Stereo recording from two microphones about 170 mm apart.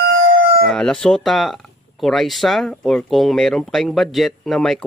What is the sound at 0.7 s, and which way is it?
Speech, 5° left (ahead or behind).